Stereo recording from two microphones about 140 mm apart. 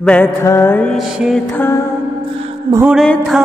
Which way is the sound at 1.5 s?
15° left (ahead or behind).